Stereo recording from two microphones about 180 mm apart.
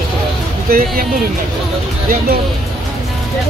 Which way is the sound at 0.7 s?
50° right (ahead or behind).